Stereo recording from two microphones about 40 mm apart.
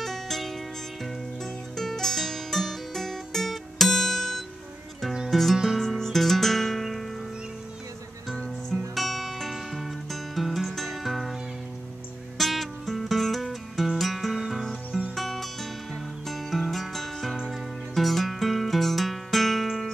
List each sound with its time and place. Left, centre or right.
0.0 s music: centre
8.9 s music: centre
12.4 s music: centre